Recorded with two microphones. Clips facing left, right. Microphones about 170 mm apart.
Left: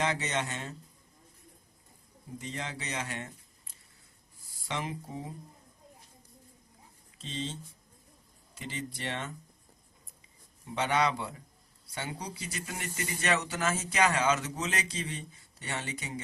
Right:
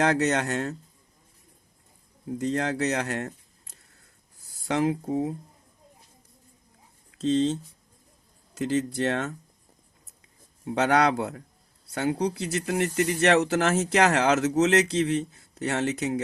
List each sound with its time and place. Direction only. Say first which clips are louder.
0.0 s speech: right 9 dB; 75° right (ahead or behind)
2.4 s speech: right 14 dB; 75° right (ahead or behind)
4.7 s speech: right 12 dB; 75° right (ahead or behind)
7.1 s speech: right 15 dB; 80° right
8.5 s speech: right 14 dB; 80° right
10.7 s speech: right 7 dB; 75° right (ahead or behind)